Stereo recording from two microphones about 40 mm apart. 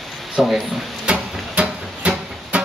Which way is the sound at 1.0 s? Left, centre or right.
Right.